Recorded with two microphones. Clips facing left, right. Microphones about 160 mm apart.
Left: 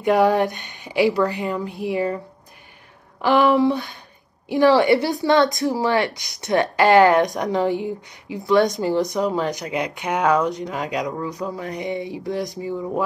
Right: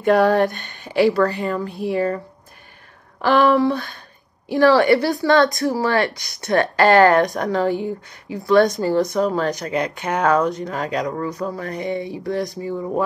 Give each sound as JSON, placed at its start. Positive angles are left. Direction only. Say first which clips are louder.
{"t": 0.0, "sound": "a woman's voice", "louder": "right 2 dB", "side_deg": 15}